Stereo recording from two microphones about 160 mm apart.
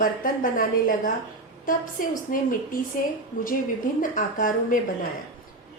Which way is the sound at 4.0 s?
55° left (ahead or behind).